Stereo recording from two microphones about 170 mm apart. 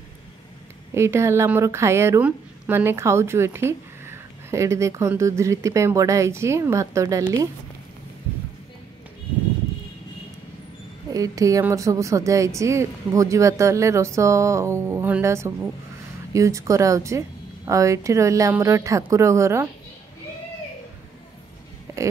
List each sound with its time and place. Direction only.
0.9 s speech: 15° right (ahead or behind)
11.1 s speech: 20° right (ahead or behind)
21.9 s a sound: 15° right (ahead or behind)